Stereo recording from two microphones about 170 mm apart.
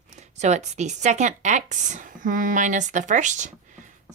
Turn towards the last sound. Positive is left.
turn(degrees=-45)  # may be behind; listen again after turning